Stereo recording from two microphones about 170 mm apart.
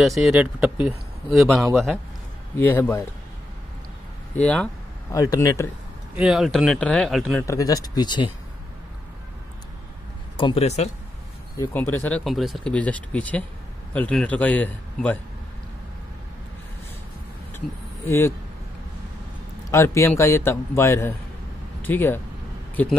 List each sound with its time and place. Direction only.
0.0 s a man's voice: centre (ahead or behind)
2.5 s a man's voice: 10° left (ahead or behind)
4.4 s a man's voice: 5° left (ahead or behind)
5.1 s speech: 20° left (ahead or behind)
6.1 s a man's voice: 5° right (ahead or behind)
7.4 s speech: 20° left (ahead or behind)
10.3 s speech: 30° left (ahead or behind)
11.5 s a man's voice: 15° left (ahead or behind)
12.3 s a man's voice: centre (ahead or behind)
18.0 s a man's voice: 15° left (ahead or behind)
19.7 s a man's voice: 15° left (ahead or behind)